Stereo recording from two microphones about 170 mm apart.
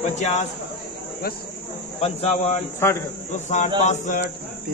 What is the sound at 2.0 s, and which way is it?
Speech, 35° left (ahead or behind).